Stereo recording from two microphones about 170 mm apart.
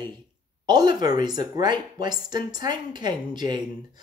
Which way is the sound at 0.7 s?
25° right (ahead or behind).